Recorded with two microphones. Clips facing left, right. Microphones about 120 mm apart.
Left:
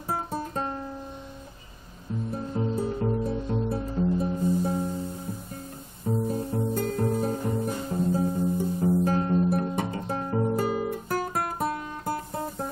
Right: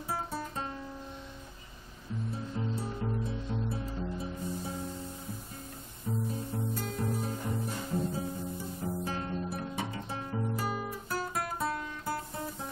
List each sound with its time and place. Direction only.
0.1 s music: 50° left (ahead or behind)
2.3 s music: 50° left (ahead or behind)
6.2 s music: 50° left (ahead or behind)